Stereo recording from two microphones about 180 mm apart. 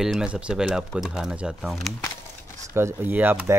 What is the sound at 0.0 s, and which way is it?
A man's voice, 5° right (ahead or behind).